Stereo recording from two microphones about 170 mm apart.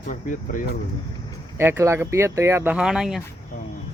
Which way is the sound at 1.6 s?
15° right (ahead or behind).